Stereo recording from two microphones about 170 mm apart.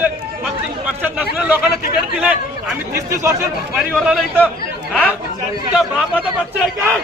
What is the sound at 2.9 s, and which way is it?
Speech, 15° right (ahead or behind).